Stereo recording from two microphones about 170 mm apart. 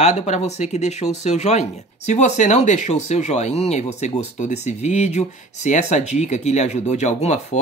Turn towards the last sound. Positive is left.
turn(degrees=40)  # may be behind; listen again after turning